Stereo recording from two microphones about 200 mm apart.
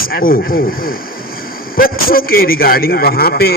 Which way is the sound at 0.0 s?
45° left (ahead or behind).